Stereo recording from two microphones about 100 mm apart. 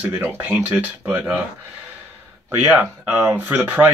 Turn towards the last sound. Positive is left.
turn(degrees=-20)  # may be behind; listen again after turning